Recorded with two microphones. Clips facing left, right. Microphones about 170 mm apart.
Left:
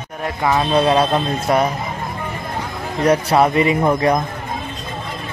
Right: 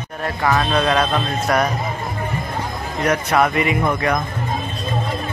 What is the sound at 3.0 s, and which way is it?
Speech, 30° left (ahead or behind).